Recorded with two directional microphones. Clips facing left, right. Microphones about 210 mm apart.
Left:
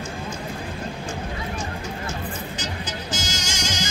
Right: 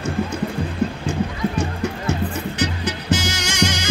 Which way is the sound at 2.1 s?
65° right (ahead or behind).